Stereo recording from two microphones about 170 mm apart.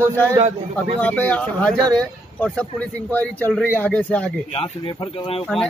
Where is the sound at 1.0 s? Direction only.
10° left (ahead or behind).